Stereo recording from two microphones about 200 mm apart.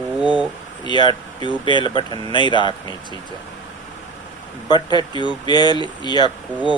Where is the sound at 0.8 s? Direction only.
20° left (ahead or behind).